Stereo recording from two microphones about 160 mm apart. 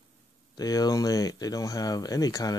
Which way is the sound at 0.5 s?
25° left (ahead or behind).